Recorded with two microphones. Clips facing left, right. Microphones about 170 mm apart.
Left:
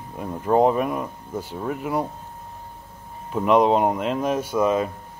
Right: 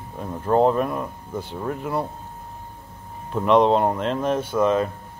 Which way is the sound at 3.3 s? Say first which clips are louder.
Even; 10° left (ahead or behind).